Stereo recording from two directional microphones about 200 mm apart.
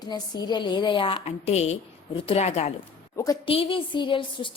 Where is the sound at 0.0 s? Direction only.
20° left (ahead or behind).